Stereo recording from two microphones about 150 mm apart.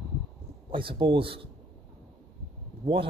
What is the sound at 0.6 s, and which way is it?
Speech, 35° right (ahead or behind).